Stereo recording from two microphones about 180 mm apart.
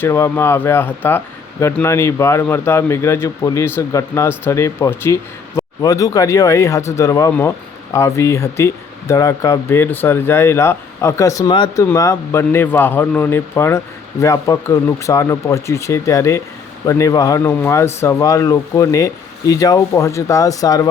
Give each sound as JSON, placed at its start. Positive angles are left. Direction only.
{"t": 0.0, "sound": "speech", "side_deg": 15}